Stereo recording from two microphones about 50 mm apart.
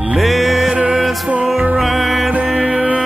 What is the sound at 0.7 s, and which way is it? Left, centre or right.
Music, right.